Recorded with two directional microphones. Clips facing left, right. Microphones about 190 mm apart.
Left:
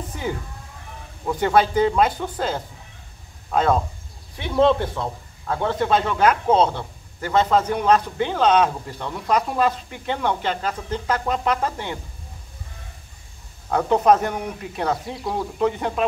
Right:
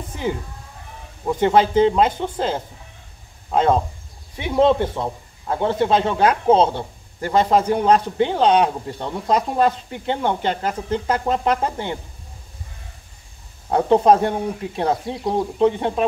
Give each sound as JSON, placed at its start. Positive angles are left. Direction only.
{"t": 1.2, "sound": "speech", "side_deg": -20}
{"t": 13.7, "sound": "speech", "side_deg": -30}